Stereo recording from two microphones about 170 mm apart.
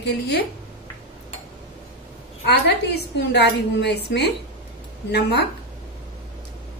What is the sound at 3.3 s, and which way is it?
A woman's voice, 85° left.